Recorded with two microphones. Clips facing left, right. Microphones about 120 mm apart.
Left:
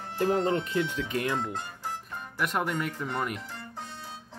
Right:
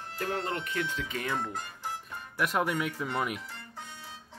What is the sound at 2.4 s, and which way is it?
Speech, centre (ahead or behind).